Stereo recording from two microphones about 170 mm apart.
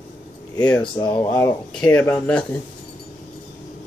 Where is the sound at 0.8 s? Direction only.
30° left (ahead or behind).